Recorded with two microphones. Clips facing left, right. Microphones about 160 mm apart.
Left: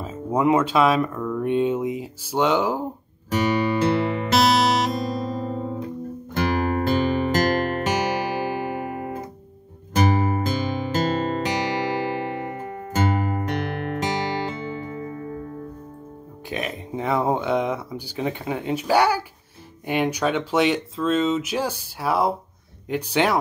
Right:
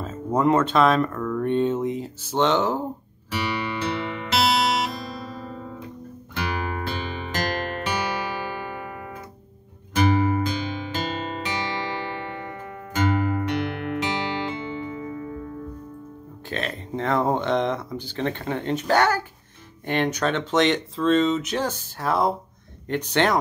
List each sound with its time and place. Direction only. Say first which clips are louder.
0.0 s speech: even; 10° left (ahead or behind)
3.3 s music: left 7 dB; 45° left (ahead or behind)
16.4 s a sound: left 1 dB; 15° left (ahead or behind)
19.9 s speech: left 1 dB; 10° left (ahead or behind)